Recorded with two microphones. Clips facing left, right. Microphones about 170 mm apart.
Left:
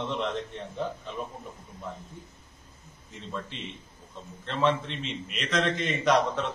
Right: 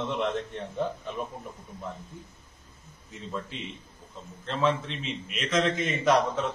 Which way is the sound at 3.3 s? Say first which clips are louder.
Right 1 dB; centre (ahead or behind).